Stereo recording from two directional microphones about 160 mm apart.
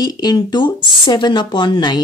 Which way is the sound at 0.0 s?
25° left (ahead or behind).